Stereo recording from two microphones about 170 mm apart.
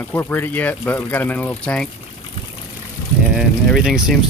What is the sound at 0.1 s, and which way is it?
Speech, 10° left (ahead or behind).